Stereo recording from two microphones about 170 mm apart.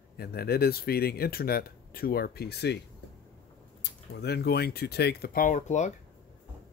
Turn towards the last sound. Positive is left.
turn(degrees=45)  # may be behind; listen again after turning